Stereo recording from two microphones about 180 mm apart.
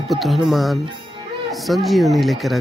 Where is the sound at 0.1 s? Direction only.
Centre (ahead or behind).